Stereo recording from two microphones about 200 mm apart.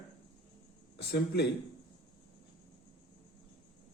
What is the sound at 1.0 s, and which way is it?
Speech, 55° left (ahead or behind).